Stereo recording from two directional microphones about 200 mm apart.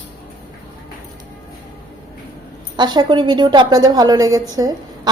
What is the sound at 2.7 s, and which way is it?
A woman's voice, 20° right (ahead or behind).